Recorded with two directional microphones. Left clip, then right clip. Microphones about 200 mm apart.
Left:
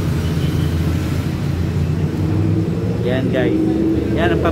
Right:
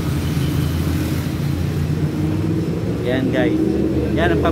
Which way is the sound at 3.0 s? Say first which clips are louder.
Even; 15° right (ahead or behind).